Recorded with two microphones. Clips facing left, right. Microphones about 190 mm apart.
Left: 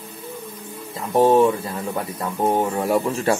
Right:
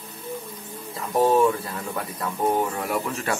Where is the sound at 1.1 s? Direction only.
25° left (ahead or behind).